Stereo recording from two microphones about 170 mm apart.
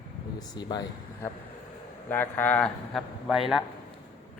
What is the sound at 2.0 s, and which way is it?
A man's voice, 10° left (ahead or behind).